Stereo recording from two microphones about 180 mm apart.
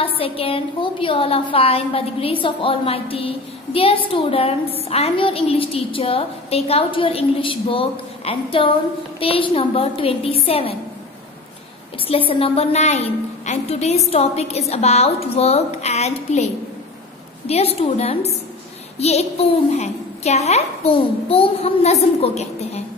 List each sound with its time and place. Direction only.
0.0 s a woman's voice: 30° left (ahead or behind)
12.1 s a woman's voice: 30° left (ahead or behind)
17.5 s a woman's voice: 35° left (ahead or behind)